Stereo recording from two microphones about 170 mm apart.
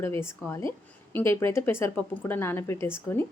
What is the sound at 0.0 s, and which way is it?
A woman's voice, 15° left (ahead or behind).